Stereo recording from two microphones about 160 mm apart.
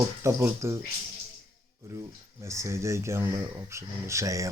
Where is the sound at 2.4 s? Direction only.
20° right (ahead or behind).